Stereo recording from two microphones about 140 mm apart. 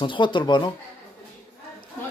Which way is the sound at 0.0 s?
35° left (ahead or behind).